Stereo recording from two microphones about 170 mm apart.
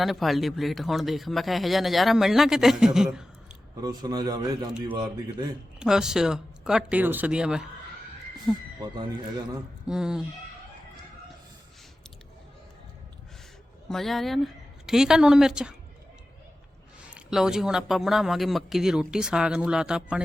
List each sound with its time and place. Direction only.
0.0 s speech: centre (ahead or behind)
3.8 s a man's voice: 25° right (ahead or behind)
5.8 s speech: 5° right (ahead or behind)
9.8 s speech: 5° right (ahead or behind)
13.8 s a woman's voice: centre (ahead or behind)
17.1 s speech: 5° right (ahead or behind)